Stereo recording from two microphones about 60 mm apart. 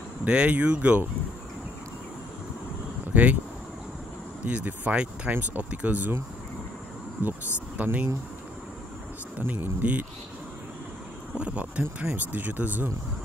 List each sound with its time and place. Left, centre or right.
0.2 s speech: right
3.1 s a sound: right
4.5 s speech: right
7.2 s speech: right
9.4 s speech: right
11.3 s speech: right